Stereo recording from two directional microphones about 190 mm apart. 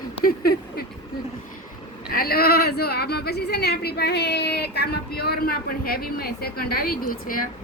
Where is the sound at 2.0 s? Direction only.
55° left (ahead or behind).